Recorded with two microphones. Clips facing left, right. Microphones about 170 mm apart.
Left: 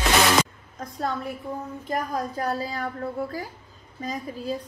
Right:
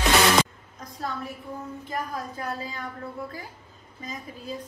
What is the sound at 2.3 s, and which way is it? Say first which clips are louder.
Speech: left 6 dB; 40° left (ahead or behind).